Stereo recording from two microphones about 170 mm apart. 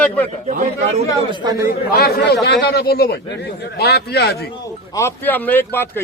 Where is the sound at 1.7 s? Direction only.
65° left (ahead or behind).